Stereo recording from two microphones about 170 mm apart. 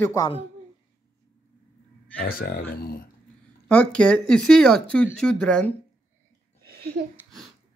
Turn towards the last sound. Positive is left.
turn(degrees=-65)  # may be behind; listen again after turning